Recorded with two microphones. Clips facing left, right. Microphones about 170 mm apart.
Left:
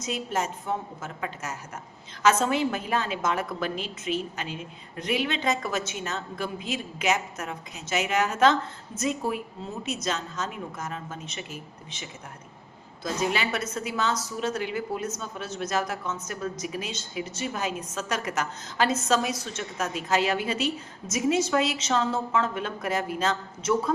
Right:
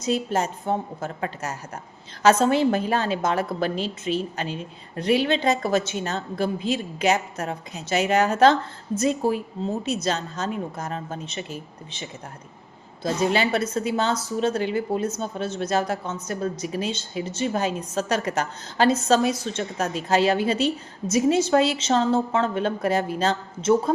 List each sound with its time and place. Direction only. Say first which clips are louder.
0.0 s a woman's voice: right 6 dB; 30° right (ahead or behind)